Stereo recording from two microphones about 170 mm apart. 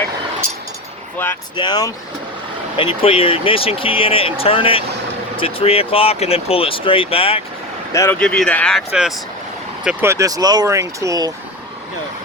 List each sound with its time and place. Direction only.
1.5 s speech: 25° left (ahead or behind)
7.9 s speech: 15° left (ahead or behind); by 9.1 s 5° right (ahead or behind)
9.8 s speech: 15° right (ahead or behind)